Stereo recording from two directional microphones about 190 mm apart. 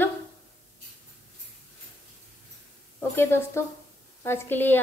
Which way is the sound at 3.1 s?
10° left (ahead or behind).